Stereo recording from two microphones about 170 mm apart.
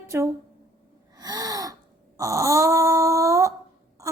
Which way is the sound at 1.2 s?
20° right (ahead or behind).